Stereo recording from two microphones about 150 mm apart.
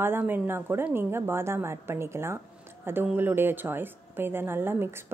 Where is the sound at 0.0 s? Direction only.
15° right (ahead or behind).